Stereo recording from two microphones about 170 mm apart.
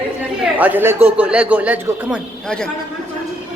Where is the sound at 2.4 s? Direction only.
5° left (ahead or behind).